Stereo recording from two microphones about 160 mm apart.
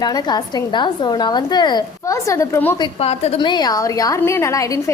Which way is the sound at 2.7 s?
35° left (ahead or behind).